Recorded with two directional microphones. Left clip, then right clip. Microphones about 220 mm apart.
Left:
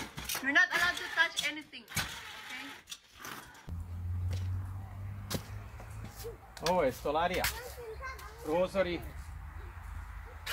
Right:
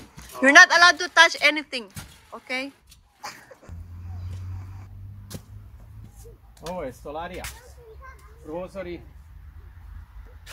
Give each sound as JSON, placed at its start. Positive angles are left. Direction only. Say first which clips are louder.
{"t": 0.4, "sound": "speech", "louder": "right 15 dB", "side_deg": -50}
{"t": 5.3, "sound": "arrow", "louder": "left 4 dB", "side_deg": -5}
{"t": 6.6, "sound": "speech", "louder": "left 3 dB", "side_deg": 0}